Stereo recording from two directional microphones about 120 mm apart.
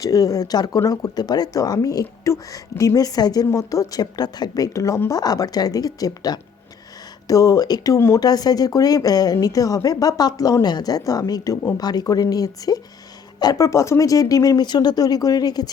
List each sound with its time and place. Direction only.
0.0 s speech: 30° left (ahead or behind)